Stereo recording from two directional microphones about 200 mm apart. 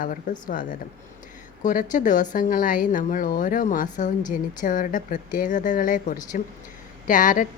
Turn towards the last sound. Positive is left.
turn(degrees=40)  # may be behind; listen again after turning